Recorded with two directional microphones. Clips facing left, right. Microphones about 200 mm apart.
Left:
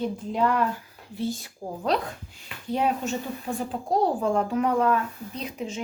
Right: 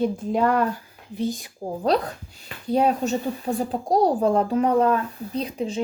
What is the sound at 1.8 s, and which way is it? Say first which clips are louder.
Speech: right 4 dB; 35° right (ahead or behind).